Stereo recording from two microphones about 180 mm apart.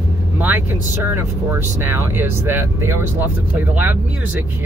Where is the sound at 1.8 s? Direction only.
15° right (ahead or behind).